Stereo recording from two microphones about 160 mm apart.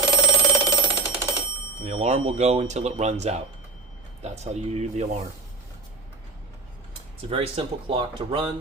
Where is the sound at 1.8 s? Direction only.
45° right (ahead or behind).